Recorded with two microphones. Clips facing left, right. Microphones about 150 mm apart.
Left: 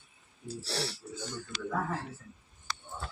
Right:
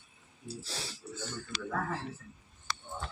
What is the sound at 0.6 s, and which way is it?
Speech, 75° left (ahead or behind).